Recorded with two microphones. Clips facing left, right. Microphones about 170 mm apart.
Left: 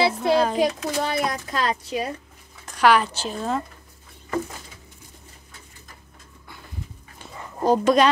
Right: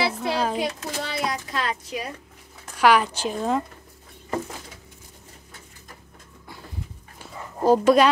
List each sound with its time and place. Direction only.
0.2 s a sound: 5° right (ahead or behind)
0.6 s a woman's voice: 50° left (ahead or behind); by 2.0 s 30° left (ahead or behind)
2.6 s speech: 10° right (ahead or behind)
7.2 s dog: 5° right (ahead or behind)